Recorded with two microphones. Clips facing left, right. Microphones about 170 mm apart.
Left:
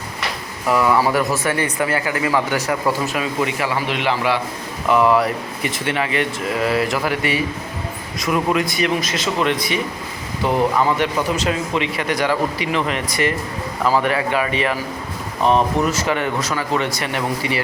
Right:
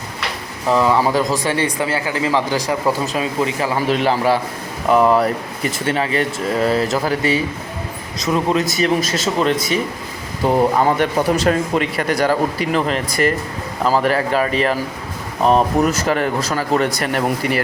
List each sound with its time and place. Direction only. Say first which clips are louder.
0.7 s speech: right 1 dB; 25° right (ahead or behind)
2.6 s speech: right 2 dB; 15° right (ahead or behind)
3.1 s speech: right 2 dB; 35° right (ahead or behind)
8.6 s speech: right 3 dB; 45° right (ahead or behind)